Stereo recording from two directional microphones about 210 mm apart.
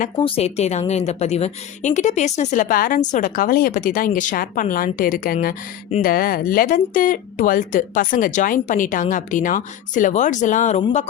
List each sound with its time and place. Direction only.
0.2 s a woman's voice: 25° left (ahead or behind)